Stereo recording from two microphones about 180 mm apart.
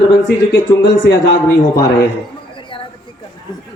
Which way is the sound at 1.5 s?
20° left (ahead or behind).